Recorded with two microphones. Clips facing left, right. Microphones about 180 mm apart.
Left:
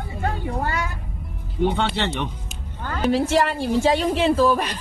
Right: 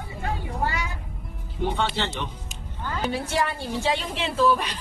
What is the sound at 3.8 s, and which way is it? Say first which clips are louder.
Speech: left 7 dB; 45° left (ahead or behind).